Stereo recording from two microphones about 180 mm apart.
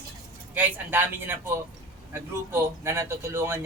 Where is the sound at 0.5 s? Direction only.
10° right (ahead or behind).